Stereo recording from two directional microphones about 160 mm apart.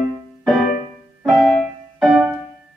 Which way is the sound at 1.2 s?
Centre (ahead or behind).